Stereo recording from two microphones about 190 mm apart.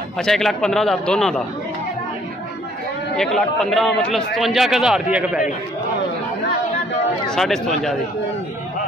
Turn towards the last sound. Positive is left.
turn(degrees=0)  # may be behind; listen again after turning